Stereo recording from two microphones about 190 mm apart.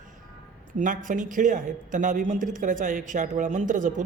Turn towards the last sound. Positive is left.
turn(degrees=-45)  # may be behind; listen again after turning